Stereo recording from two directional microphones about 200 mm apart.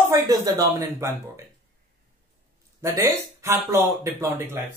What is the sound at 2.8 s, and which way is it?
Speech, 15° right (ahead or behind).